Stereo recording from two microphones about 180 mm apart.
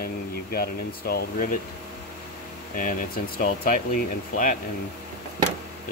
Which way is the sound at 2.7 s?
50° left (ahead or behind).